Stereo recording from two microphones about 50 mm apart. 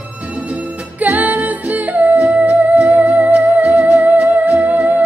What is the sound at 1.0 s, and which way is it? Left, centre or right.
Music, right.